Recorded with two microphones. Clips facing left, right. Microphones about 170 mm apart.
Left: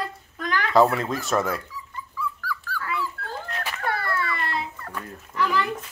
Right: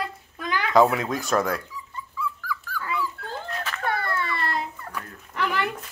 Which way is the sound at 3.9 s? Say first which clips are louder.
Even; 20° right (ahead or behind).